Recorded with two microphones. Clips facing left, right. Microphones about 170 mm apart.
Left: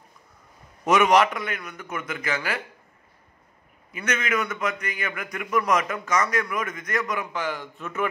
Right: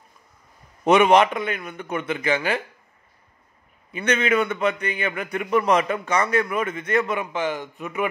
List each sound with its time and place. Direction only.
0.8 s a man's voice: 25° right (ahead or behind)
3.9 s a man's voice: 30° right (ahead or behind)